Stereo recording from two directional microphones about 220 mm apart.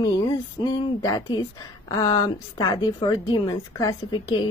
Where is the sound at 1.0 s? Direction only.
15° left (ahead or behind).